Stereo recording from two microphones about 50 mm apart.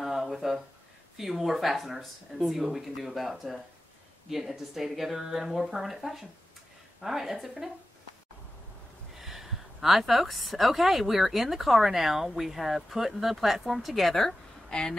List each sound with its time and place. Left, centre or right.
0.0 s a sound: centre
1.1 s a woman's voice: centre
9.2 s a woman's voice: centre
14.7 s speech: centre